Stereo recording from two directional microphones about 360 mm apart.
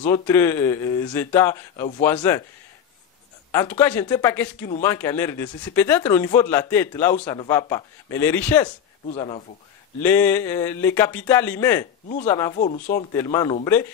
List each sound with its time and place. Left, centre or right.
0.0 s speech: centre
3.5 s speech: centre; by 13.0 s left
13.1 s speech: centre